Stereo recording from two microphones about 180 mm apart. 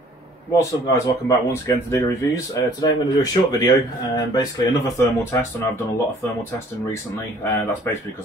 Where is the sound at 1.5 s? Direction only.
15° left (ahead or behind).